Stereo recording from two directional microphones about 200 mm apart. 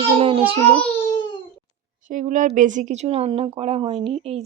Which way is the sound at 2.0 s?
40° right (ahead or behind).